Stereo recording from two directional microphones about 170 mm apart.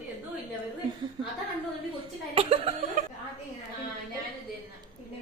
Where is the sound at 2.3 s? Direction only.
35° right (ahead or behind).